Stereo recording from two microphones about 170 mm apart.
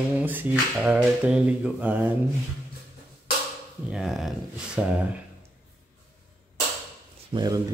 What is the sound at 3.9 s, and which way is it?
Speech, 5° right (ahead or behind).